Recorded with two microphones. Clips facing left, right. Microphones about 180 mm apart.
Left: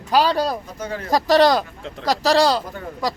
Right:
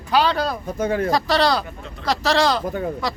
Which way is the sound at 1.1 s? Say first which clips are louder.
Left 9 dB; 40° left (ahead or behind).